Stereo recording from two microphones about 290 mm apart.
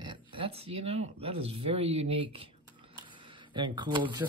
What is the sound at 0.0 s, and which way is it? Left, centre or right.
Speech, centre.